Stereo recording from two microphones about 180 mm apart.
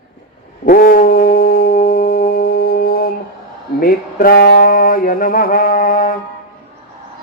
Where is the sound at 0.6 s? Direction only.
55° left (ahead or behind).